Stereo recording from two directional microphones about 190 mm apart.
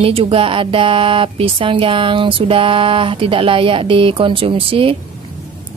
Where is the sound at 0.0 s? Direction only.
30° right (ahead or behind).